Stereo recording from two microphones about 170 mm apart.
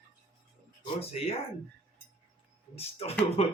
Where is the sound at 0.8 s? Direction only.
35° left (ahead or behind).